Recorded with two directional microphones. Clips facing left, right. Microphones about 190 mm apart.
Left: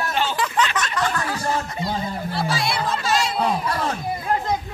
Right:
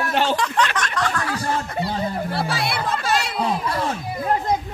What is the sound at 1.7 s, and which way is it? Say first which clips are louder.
Chatter: right 2 dB; 60° right (ahead or behind).